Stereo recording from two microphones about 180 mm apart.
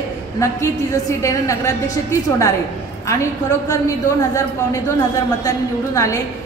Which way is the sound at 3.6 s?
20° left (ahead or behind).